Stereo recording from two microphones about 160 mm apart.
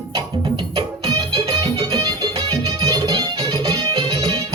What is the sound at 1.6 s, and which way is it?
Music, 30° right (ahead or behind).